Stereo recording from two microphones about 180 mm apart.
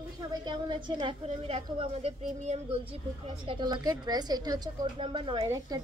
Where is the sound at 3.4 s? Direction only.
25° right (ahead or behind).